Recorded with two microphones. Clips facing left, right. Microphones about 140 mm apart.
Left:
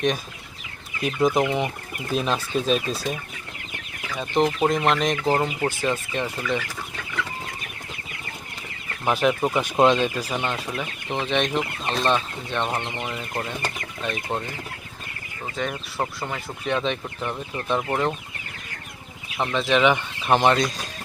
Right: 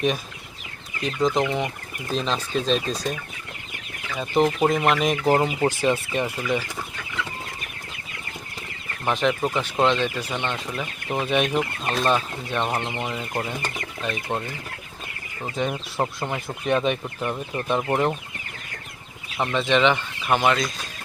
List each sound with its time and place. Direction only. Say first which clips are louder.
1.0 s speech: left 1 dB; 10° left (ahead or behind); by 6.6 s 10° right (ahead or behind)
9.0 s speech: left 1 dB; 5° left (ahead or behind)
11.1 s speech: right 1 dB; 10° right (ahead or behind)
15.5 s speech: right 2 dB; 15° right (ahead or behind)
19.4 s speech: even; centre (ahead or behind)
20.2 s speech: left 2 dB; 30° left (ahead or behind)